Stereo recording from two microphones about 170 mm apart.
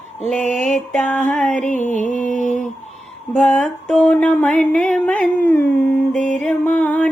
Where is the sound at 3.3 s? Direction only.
5° left (ahead or behind).